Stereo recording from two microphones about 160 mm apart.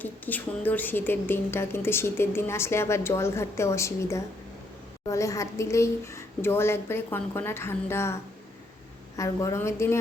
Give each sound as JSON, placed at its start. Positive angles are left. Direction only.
{"t": 0.0, "sound": "a woman's voice", "side_deg": 10}